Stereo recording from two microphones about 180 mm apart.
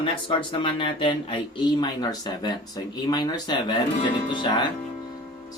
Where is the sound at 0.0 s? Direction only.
30° left (ahead or behind).